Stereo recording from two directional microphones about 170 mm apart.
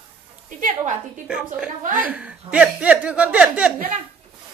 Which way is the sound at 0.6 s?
50° right (ahead or behind).